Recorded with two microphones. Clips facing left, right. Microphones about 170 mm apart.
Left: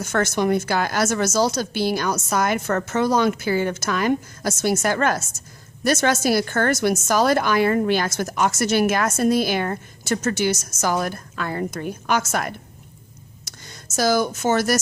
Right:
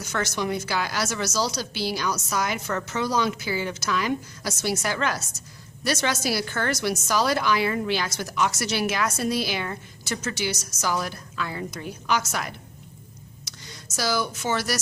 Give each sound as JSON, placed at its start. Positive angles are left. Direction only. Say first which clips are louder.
{"t": 0.0, "sound": "a woman's voice", "louder": "left 7 dB", "side_deg": 50}